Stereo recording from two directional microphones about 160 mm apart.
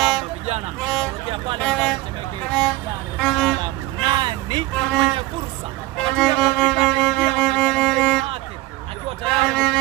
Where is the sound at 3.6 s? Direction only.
30° right (ahead or behind).